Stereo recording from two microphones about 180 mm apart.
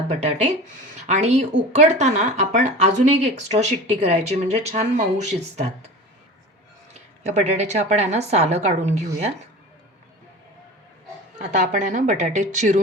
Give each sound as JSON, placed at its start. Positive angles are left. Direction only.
{"t": 0.1, "sound": "speech", "side_deg": -40}
{"t": 7.3, "sound": "speech", "side_deg": -40}
{"t": 11.3, "sound": "a woman's voice", "side_deg": -45}